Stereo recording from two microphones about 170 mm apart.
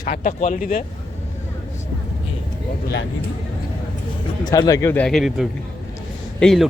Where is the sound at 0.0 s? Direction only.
50° left (ahead or behind).